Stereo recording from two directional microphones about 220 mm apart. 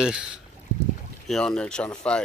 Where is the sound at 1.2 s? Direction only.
Centre (ahead or behind).